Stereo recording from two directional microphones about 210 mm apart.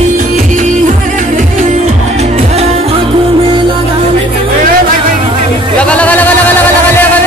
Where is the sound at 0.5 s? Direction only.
35° right (ahead or behind).